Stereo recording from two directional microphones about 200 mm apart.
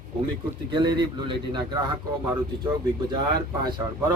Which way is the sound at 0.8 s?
20° right (ahead or behind).